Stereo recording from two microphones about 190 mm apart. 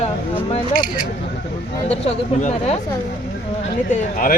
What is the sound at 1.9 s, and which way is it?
Speech, 30° left (ahead or behind).